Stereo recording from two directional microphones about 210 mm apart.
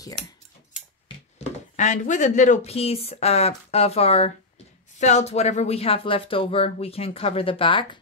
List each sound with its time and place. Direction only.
1.8 s speech: 35° left (ahead or behind)